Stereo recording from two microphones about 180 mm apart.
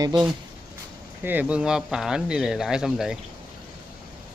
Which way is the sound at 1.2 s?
10° right (ahead or behind).